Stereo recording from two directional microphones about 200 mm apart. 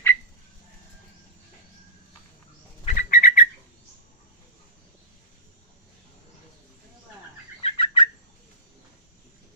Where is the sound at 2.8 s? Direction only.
40° left (ahead or behind).